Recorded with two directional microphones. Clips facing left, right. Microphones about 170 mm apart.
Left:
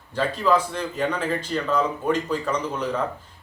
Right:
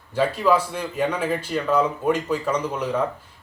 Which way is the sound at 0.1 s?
10° right (ahead or behind).